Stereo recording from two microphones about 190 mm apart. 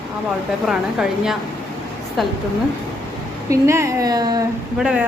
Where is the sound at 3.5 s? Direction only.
15° right (ahead or behind).